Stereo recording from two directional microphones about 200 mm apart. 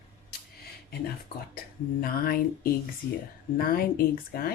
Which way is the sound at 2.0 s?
45° left (ahead or behind).